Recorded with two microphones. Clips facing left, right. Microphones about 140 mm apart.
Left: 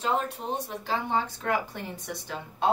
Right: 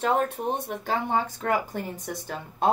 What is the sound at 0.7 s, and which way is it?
Speech, 50° right (ahead or behind).